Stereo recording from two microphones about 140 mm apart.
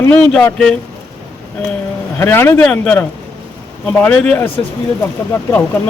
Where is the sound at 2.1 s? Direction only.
15° left (ahead or behind).